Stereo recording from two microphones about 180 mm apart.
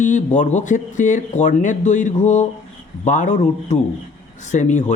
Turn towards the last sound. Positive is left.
turn(degrees=40)  # may be behind; listen again after turning